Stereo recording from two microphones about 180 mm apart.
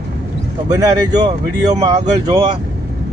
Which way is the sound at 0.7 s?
20° right (ahead or behind).